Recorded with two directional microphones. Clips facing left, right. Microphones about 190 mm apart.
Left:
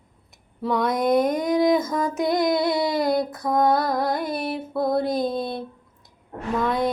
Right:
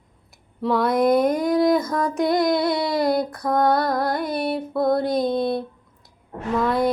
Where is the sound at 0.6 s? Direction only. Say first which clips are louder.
Right 3 dB; centre (ahead or behind).